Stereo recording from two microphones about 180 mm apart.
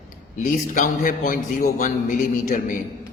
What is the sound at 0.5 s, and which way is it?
A man's voice, 45° left (ahead or behind).